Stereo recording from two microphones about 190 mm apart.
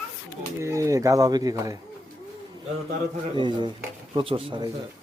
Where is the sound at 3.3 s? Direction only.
25° right (ahead or behind).